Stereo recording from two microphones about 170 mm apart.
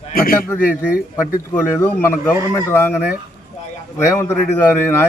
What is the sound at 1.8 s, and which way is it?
Speech, 15° left (ahead or behind).